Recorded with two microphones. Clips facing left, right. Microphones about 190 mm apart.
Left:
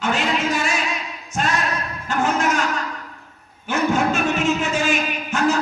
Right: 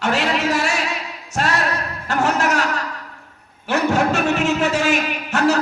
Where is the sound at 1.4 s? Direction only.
70° right (ahead or behind).